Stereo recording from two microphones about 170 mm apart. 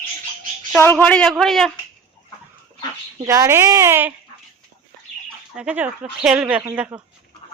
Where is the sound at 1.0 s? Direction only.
5° left (ahead or behind).